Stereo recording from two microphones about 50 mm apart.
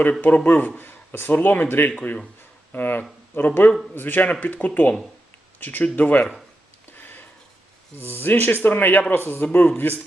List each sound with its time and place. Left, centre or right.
0.2 s speech: left
6.9 s a sound: left
7.9 s speech: left